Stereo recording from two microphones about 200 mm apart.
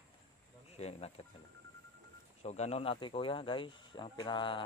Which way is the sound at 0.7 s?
30° left (ahead or behind).